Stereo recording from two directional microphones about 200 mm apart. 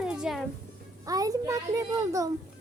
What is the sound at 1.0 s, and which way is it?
A child's voice, 15° right (ahead or behind).